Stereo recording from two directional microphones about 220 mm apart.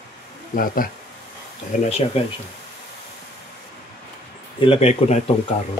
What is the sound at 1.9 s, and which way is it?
Speech, 30° left (ahead or behind).